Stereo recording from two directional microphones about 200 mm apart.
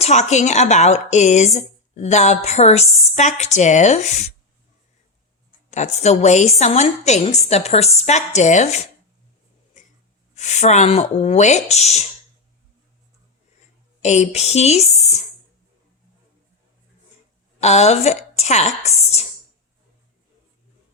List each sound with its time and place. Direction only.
0.0 s speech: 35° left (ahead or behind)
5.7 s speech: 35° left (ahead or behind)
10.3 s speech: 35° left (ahead or behind)
14.0 s a woman's voice: 35° left (ahead or behind)
17.6 s a woman's voice: 35° left (ahead or behind)